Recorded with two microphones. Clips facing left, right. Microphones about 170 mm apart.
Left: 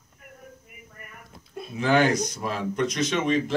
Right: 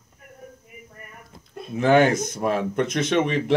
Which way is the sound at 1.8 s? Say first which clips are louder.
Right 4 dB; 50° right (ahead or behind).